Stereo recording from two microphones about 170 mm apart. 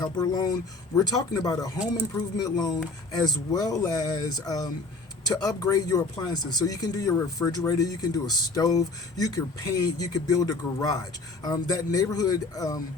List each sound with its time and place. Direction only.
0.0 s speech: 25° left (ahead or behind)